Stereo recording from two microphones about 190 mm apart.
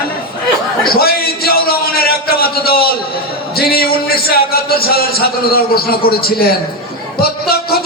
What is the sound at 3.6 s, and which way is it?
A man's voice, 55° left (ahead or behind).